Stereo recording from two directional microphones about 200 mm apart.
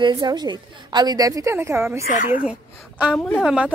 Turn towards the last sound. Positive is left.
turn(degrees=0)  # may be behind; listen again after turning